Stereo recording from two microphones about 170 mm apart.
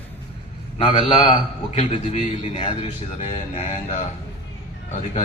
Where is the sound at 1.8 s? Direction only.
40° left (ahead or behind).